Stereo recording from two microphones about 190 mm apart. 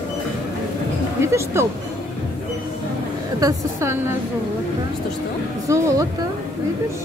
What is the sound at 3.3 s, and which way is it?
Speech, 15° right (ahead or behind).